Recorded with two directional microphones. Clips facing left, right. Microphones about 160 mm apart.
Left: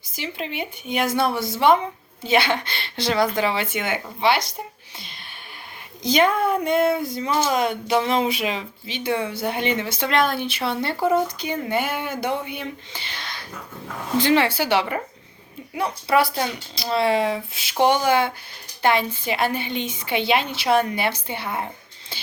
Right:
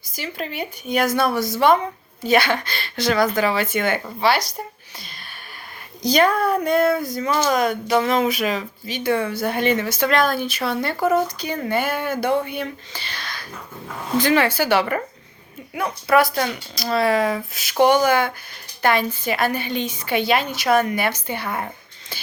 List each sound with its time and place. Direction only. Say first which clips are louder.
0.3 s speech: right 2 dB; 45° right (ahead or behind)
0.9 s speech: right 2 dB; 25° left (ahead or behind)
6.1 s speech: right 1 dB; 20° left (ahead or behind)
15.8 s a woman's voice: right 2 dB; 30° left (ahead or behind)